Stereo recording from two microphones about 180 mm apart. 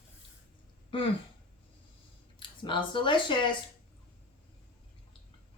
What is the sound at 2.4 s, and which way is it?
Speech, 25° left (ahead or behind).